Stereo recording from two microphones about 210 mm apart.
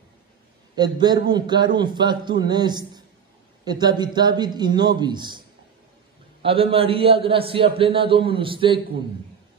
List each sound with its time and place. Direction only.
0.7 s a man's voice: 20° right (ahead or behind)
6.4 s a man's voice: 25° right (ahead or behind)